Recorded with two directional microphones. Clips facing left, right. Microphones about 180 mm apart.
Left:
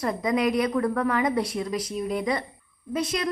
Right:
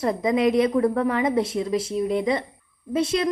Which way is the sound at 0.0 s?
25° right (ahead or behind).